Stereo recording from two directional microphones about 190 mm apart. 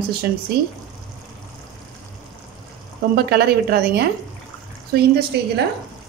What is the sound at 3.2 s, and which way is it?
Speech, 60° right (ahead or behind).